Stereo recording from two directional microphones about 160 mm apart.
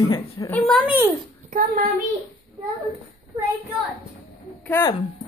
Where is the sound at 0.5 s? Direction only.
10° left (ahead or behind).